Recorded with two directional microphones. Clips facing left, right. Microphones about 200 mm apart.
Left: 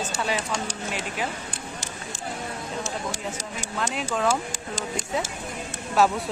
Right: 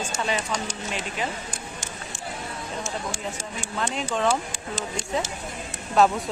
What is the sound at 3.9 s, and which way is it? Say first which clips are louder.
Speech: right 1 dB; 5° left (ahead or behind).